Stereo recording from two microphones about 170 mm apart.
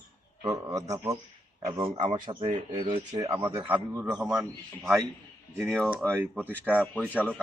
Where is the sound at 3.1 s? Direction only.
20° right (ahead or behind).